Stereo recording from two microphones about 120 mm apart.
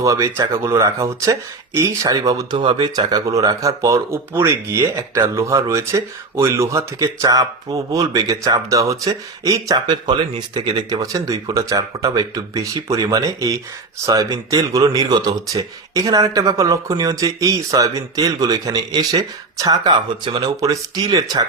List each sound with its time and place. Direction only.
0.0 s speech: 25° right (ahead or behind)